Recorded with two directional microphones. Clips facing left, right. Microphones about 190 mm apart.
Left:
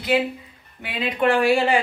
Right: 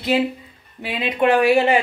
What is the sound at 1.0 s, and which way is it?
Speech, 20° right (ahead or behind).